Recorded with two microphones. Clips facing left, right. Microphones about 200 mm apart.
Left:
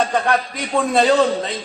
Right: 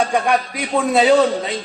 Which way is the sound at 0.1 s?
10° right (ahead or behind).